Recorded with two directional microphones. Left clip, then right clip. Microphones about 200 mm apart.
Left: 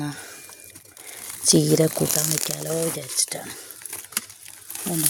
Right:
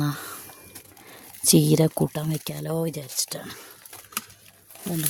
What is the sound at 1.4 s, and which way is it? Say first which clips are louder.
Speech: left 2 dB; 15° right (ahead or behind).